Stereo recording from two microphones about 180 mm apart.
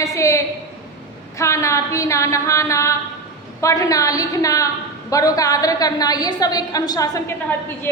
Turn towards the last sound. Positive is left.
turn(degrees=15)  # may be behind; listen again after turning